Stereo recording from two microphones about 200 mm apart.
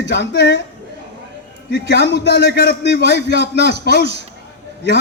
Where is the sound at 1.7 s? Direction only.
60° left (ahead or behind).